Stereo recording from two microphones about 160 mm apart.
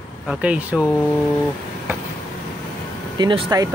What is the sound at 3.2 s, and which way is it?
Speech, 25° right (ahead or behind).